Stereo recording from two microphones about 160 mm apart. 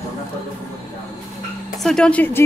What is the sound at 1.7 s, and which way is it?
Speech, 5° left (ahead or behind).